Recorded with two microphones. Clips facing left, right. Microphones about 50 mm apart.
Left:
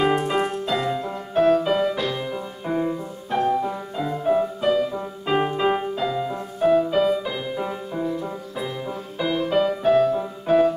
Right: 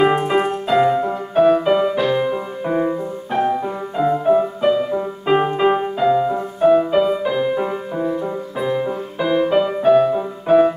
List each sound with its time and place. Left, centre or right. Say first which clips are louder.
0.2 s music: right 5 dB; centre
1.3 s music: right 4 dB; centre
3.3 s music: right 2 dB; centre